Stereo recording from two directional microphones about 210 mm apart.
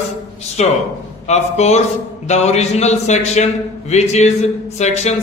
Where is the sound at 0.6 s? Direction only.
30° left (ahead or behind).